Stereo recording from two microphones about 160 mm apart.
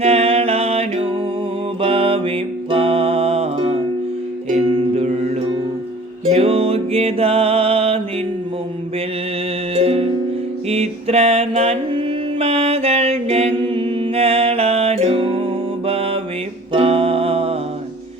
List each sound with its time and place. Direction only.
0.0 s music: 40° right (ahead or behind)
9.7 s music: 40° right (ahead or behind)
10.7 s mantra: 40° right (ahead or behind)
16.7 s music: 35° right (ahead or behind)